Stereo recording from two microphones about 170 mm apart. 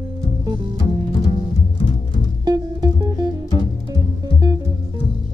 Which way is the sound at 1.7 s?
25° left (ahead or behind).